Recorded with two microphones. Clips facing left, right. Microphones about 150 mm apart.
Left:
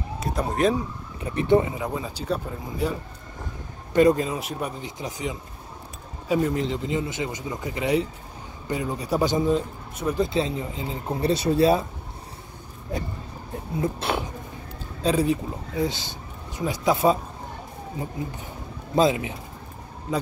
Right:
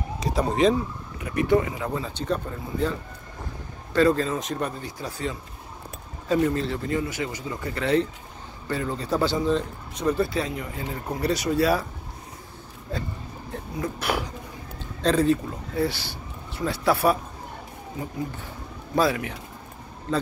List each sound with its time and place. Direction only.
0.2 s speech: centre (ahead or behind)
1.2 s speech: 25° left (ahead or behind)
12.9 s speech: 20° left (ahead or behind)
15.0 s speech: 10° left (ahead or behind)
18.9 s speech: 20° left (ahead or behind)